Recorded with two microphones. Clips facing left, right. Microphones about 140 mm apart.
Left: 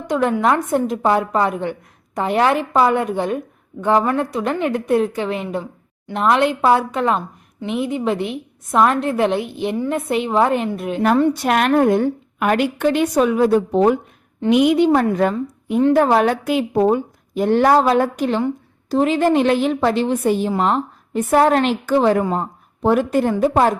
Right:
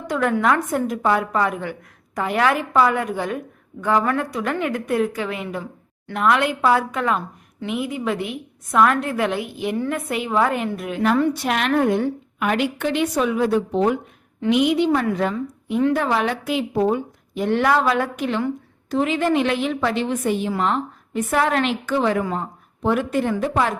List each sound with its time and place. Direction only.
0.1 s a woman's voice: 20° left (ahead or behind)
11.4 s a woman's voice: 45° left (ahead or behind)